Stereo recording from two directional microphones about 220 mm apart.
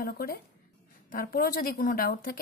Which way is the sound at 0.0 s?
45° left (ahead or behind).